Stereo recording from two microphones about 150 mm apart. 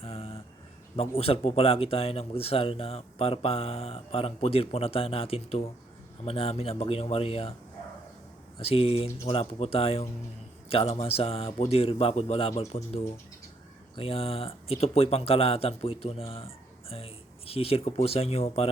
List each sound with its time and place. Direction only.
0.0 s a sound: 40° left (ahead or behind)
0.9 s speech: 40° left (ahead or behind)
8.5 s speech: 40° left (ahead or behind)